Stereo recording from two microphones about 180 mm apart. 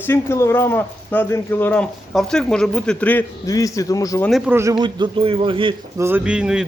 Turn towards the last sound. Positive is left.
turn(degrees=-5)  # may be behind; listen again after turning